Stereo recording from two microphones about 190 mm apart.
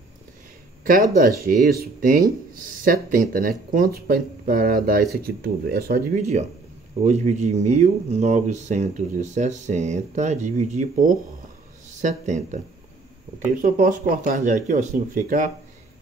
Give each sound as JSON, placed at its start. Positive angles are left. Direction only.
{"t": 1.4, "sound": "speech", "side_deg": -50}
{"t": 7.1, "sound": "speech", "side_deg": -35}
{"t": 13.6, "sound": "speech", "side_deg": -45}